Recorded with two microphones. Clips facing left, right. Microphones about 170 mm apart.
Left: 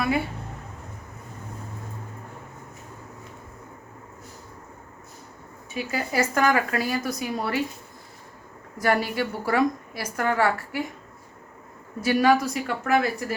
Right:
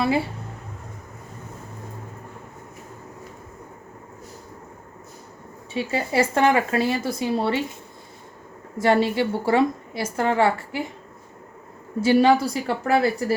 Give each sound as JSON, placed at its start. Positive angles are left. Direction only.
{"t": 0.0, "sound": "a woman's voice", "side_deg": -30}
{"t": 5.7, "sound": "a woman's voice", "side_deg": -25}
{"t": 8.8, "sound": "a woman's voice", "side_deg": -25}
{"t": 11.9, "sound": "a woman's voice", "side_deg": -25}